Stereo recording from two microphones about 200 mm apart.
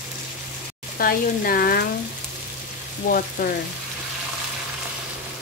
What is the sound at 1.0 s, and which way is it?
Speech, 45° left (ahead or behind).